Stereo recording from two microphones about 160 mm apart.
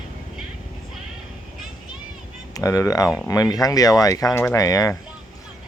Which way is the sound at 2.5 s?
20° left (ahead or behind).